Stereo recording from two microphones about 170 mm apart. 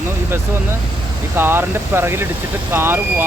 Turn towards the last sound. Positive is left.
turn(degrees=-15)  # may be behind; listen again after turning